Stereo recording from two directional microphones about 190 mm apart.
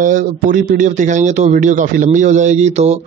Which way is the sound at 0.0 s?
45° right (ahead or behind).